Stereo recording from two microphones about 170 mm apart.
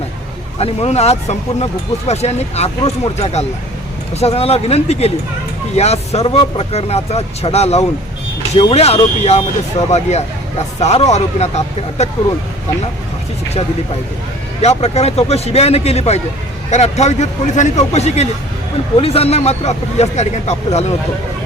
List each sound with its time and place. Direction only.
0.6 s speech: 40° left (ahead or behind)
14.6 s speech: 40° left (ahead or behind)